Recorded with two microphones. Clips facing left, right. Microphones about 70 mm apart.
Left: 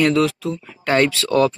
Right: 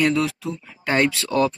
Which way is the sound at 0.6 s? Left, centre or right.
Centre.